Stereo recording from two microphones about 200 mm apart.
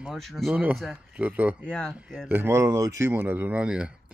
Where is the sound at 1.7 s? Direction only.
5° left (ahead or behind).